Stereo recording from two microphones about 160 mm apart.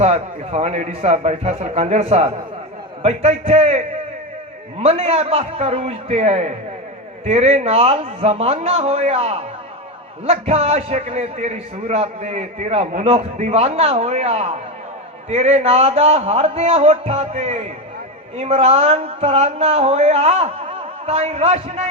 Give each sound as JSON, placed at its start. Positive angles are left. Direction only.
{"t": 0.0, "sound": "a man's voice", "side_deg": -40}